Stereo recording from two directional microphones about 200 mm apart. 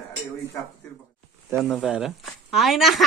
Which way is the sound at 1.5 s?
Centre (ahead or behind).